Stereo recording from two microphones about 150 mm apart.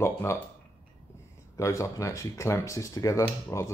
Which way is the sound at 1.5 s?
20° left (ahead or behind).